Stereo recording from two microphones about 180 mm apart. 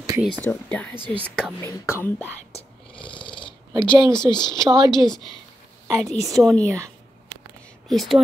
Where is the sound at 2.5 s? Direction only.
30° left (ahead or behind).